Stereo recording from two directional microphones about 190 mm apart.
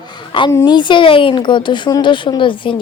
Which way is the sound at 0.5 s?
25° left (ahead or behind).